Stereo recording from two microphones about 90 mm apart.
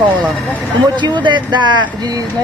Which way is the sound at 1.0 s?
60° right (ahead or behind).